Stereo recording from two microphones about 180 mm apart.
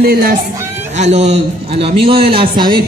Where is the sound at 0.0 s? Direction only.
55° right (ahead or behind).